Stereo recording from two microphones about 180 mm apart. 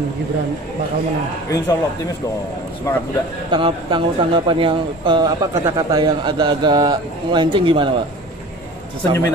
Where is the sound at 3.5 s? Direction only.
25° right (ahead or behind).